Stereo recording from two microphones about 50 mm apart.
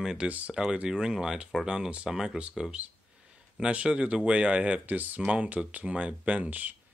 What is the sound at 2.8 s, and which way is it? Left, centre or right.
Speech, right.